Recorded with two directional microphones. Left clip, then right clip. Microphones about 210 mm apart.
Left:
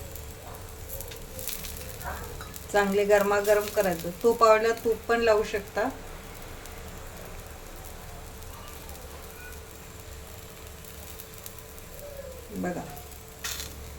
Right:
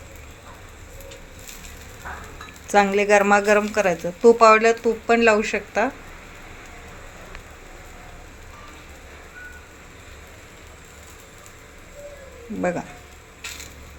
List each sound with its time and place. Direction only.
2.7 s speech: 40° right (ahead or behind)